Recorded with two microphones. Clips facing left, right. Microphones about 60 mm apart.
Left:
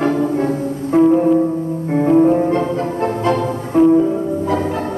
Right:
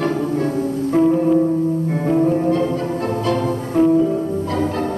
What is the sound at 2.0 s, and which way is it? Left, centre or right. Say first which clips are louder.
Music: left 6 dB; centre.